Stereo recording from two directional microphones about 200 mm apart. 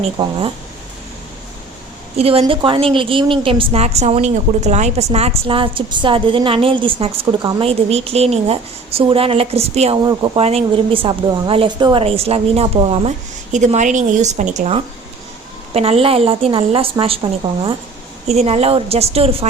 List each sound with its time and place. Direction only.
0.2 s a woman's voice: 25° right (ahead or behind)
2.1 s a woman's voice: 30° right (ahead or behind)
18.3 s a woman's voice: 35° right (ahead or behind)